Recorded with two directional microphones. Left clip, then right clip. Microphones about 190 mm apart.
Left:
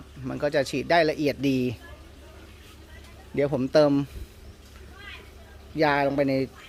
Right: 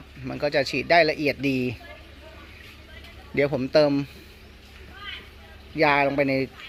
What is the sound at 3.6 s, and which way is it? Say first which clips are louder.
Speech: left 1 dB; 20° left (ahead or behind).